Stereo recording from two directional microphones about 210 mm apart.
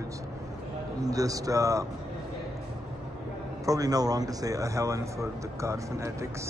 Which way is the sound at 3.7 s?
15° right (ahead or behind).